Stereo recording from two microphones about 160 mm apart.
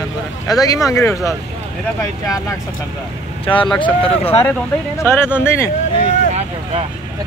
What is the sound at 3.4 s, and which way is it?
Speech, 30° left (ahead or behind).